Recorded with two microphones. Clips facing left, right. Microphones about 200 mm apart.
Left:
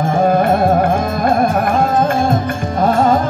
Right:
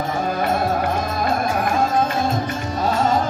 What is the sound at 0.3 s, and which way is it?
Music, 55° left (ahead or behind).